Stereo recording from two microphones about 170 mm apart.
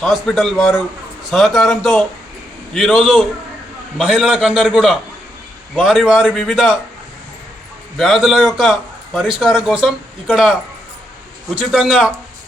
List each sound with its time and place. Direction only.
0.0 s a man's voice: centre (ahead or behind)
7.9 s a man's voice: centre (ahead or behind)